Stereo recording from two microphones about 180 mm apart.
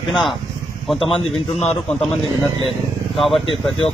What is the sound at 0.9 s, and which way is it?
Speech, 30° left (ahead or behind).